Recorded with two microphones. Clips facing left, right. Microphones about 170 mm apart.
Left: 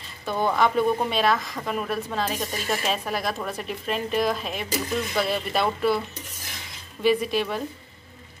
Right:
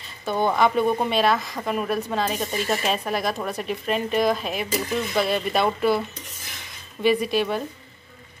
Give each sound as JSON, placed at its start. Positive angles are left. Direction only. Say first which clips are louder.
{"t": 0.3, "sound": "speech", "louder": "right 2 dB", "side_deg": -25}
{"t": 0.6, "sound": "a woman's voice", "louder": "even", "side_deg": -5}
{"t": 7.0, "sound": "a woman's voice", "louder": "right 1 dB", "side_deg": 0}